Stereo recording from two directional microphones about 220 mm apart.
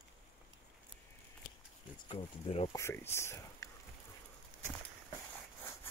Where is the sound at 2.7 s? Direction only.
15° left (ahead or behind).